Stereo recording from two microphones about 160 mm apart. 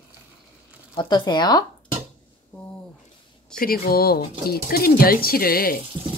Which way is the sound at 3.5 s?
70° left (ahead or behind).